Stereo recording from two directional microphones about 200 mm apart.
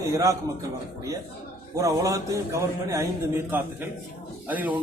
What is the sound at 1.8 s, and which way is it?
Speech, 15° right (ahead or behind).